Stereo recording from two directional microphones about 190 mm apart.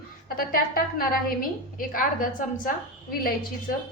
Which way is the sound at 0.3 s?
50° left (ahead or behind).